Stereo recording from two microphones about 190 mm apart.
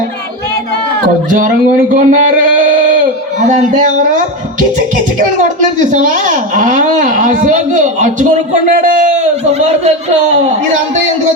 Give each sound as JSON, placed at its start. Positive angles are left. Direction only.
{"t": 1.0, "sound": "a child's voice", "side_deg": -45}
{"t": 3.5, "sound": "a child's voice", "side_deg": -45}
{"t": 5.9, "sound": "a child's voice", "side_deg": -45}